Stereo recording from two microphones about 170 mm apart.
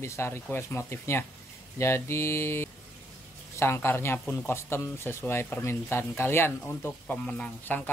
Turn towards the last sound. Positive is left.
turn(degrees=10)  # may be behind; listen again after turning